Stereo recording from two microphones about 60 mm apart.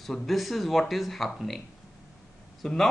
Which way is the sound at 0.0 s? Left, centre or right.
Centre.